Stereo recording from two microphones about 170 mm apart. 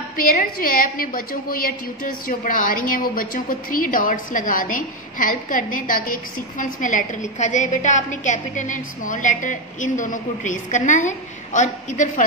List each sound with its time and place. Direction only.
0.2 s a woman's voice: 55° left (ahead or behind)